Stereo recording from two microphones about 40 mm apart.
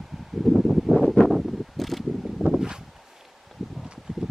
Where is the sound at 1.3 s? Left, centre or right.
Centre.